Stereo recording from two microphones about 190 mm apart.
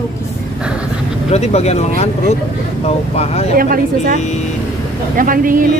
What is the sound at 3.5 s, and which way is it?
Speech, 50° right (ahead or behind).